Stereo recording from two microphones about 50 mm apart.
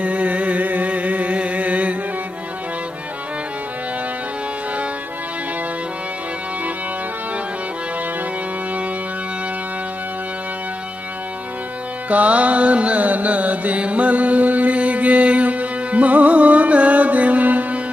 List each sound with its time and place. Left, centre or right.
0.0 s music: right
12.1 s music: right